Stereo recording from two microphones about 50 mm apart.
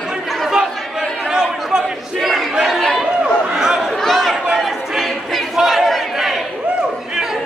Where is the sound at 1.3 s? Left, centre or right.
Centre.